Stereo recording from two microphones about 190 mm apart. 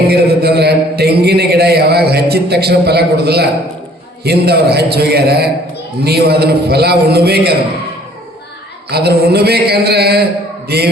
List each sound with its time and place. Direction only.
0.1 s a man's voice: 60° right (ahead or behind)
8.9 s a man's voice: 60° right (ahead or behind)